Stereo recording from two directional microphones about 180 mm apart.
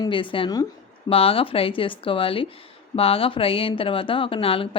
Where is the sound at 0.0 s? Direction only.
30° left (ahead or behind).